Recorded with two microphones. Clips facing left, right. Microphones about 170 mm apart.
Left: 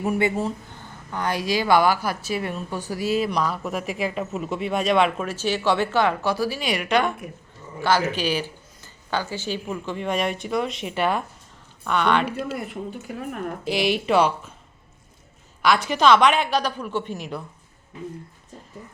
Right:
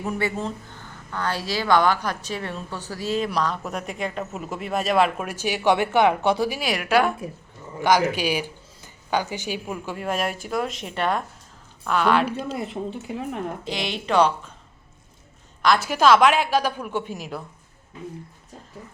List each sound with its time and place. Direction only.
0.0 s a woman's voice: 20° left (ahead or behind); by 6.6 s 20° right (ahead or behind)
6.6 s speech: 5° right (ahead or behind)
12.5 s speech: 25° right (ahead or behind)
13.7 s a woman's voice: 10° left (ahead or behind)
15.6 s speech: centre (ahead or behind)